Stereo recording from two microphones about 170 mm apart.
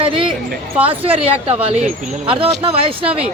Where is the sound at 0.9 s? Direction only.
35° right (ahead or behind).